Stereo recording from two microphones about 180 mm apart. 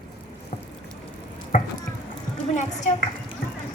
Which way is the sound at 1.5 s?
40° left (ahead or behind).